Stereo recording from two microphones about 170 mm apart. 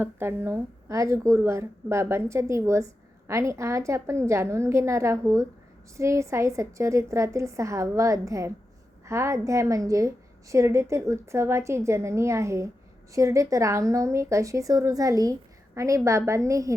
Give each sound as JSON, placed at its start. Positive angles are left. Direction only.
{"t": 0.0, "sound": "a woman's voice", "side_deg": -15}